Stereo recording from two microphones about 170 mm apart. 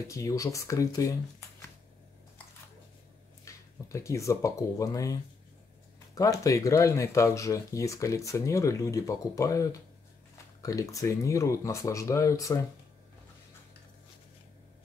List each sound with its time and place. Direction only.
0.1 s speech: 20° left (ahead or behind)
3.4 s speech: 15° left (ahead or behind)
6.1 s speech: 20° left (ahead or behind)